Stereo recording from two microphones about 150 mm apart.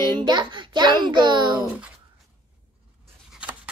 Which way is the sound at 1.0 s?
30° right (ahead or behind).